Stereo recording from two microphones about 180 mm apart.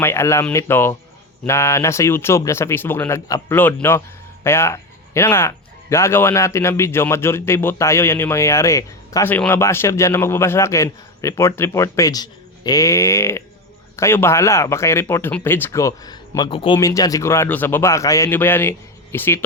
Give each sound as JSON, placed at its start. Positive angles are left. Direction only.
{"t": 0.0, "sound": "speech", "side_deg": 15}